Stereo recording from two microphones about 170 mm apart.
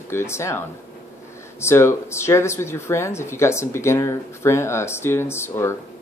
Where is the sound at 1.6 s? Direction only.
15° left (ahead or behind).